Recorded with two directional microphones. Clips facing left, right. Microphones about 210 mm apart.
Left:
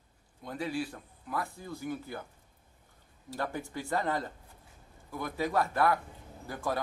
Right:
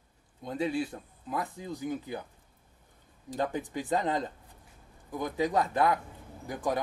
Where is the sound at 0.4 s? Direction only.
20° right (ahead or behind).